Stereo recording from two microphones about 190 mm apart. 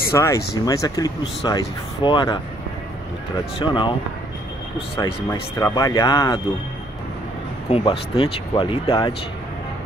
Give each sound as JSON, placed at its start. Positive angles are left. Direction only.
{"t": 0.1, "sound": "speech", "side_deg": 15}
{"t": 3.5, "sound": "speech", "side_deg": 25}
{"t": 4.9, "sound": "speech", "side_deg": 20}
{"t": 7.7, "sound": "speech", "side_deg": 30}